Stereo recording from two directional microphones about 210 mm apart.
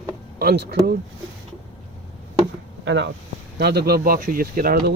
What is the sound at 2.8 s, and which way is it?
Speech, 60° right (ahead or behind).